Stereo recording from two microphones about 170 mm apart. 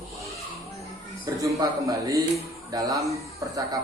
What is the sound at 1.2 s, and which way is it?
Speech, 20° right (ahead or behind).